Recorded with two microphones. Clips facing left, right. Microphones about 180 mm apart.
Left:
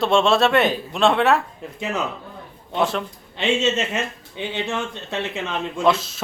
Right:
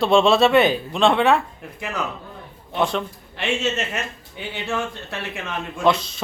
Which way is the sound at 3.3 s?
20° left (ahead or behind).